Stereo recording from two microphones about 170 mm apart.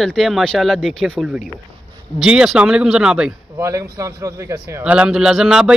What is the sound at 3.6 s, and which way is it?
A man's voice, 20° right (ahead or behind).